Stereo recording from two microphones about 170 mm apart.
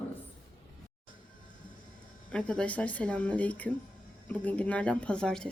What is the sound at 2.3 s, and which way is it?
Speech, 5° left (ahead or behind).